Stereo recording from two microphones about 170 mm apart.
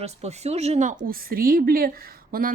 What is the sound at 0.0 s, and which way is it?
Speech, 40° right (ahead or behind).